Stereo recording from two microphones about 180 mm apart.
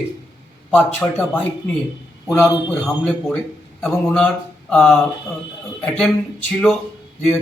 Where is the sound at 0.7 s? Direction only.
10° left (ahead or behind).